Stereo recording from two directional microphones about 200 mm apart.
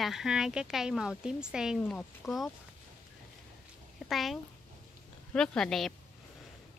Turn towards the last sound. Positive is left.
turn(degrees=0)  # may be behind; listen again after turning